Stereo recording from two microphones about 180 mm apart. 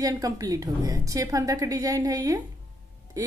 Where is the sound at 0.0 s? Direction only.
20° right (ahead or behind).